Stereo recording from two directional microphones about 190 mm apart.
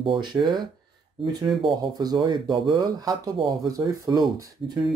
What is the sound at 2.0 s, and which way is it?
Speech, 20° right (ahead or behind).